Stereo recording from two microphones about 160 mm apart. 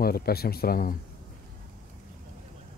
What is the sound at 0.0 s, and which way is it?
Speech, 75° left (ahead or behind).